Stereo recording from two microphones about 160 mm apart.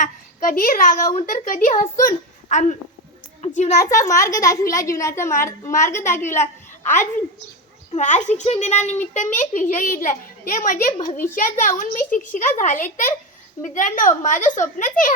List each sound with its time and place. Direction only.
0.0 s a woman's voice: 55° left (ahead or behind)
3.8 s a child's voice: 20° left (ahead or behind)
7.9 s a child's voice: 50° left (ahead or behind)